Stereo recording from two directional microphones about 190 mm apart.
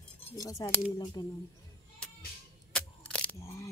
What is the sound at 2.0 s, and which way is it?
Music, 5° left (ahead or behind).